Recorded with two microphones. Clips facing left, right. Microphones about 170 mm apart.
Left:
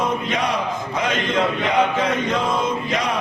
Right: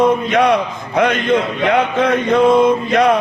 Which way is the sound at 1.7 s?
60° right (ahead or behind).